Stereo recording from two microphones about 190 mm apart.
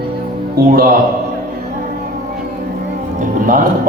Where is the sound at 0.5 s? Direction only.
50° right (ahead or behind).